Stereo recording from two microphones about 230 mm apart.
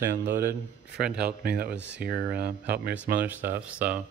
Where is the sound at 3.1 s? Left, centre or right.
Centre.